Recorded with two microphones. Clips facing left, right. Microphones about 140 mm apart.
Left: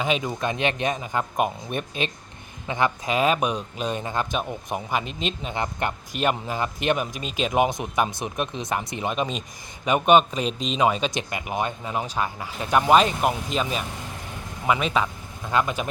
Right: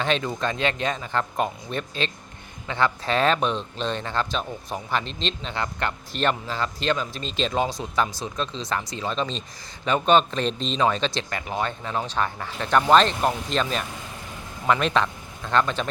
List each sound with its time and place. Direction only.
0.0 s a man's voice: 10° left (ahead or behind)